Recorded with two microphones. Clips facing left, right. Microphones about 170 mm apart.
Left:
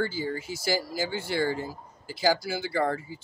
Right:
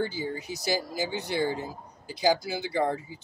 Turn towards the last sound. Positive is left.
turn(degrees=-20)  # may be behind; listen again after turning